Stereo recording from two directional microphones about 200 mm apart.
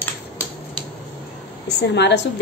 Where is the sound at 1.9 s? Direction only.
60° left (ahead or behind).